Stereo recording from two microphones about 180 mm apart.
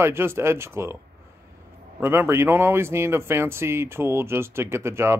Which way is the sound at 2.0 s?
15° right (ahead or behind).